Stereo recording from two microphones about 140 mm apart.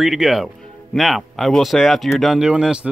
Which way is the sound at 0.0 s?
Centre (ahead or behind).